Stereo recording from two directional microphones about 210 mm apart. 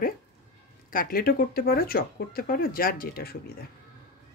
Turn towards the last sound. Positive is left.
turn(degrees=45)  # may be behind; listen again after turning